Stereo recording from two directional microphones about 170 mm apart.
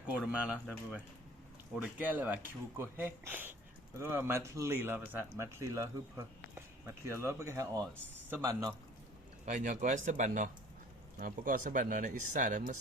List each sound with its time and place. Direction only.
0.3 s a man's voice: 5° right (ahead or behind)
9.5 s speech: 45° right (ahead or behind)